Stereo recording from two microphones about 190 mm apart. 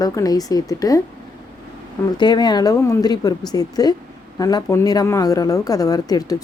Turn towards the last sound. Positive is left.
turn(degrees=20)  # may be behind; listen again after turning